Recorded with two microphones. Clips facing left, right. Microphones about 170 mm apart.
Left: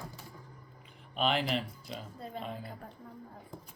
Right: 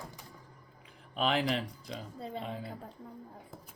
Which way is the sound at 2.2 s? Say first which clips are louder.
Right 2 dB; 30° right (ahead or behind).